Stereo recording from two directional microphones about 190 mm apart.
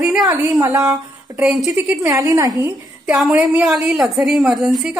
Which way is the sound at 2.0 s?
15° right (ahead or behind).